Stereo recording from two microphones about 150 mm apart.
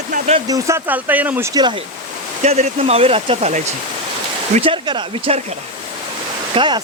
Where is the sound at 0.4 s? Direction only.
25° right (ahead or behind).